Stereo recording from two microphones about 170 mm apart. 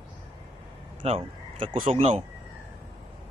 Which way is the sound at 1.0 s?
35° right (ahead or behind).